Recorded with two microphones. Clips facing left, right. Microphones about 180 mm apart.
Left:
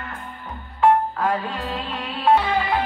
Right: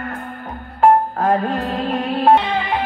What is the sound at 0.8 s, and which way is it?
Music, 45° right (ahead or behind).